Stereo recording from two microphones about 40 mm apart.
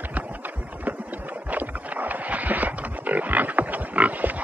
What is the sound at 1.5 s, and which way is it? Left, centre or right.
Pig, right.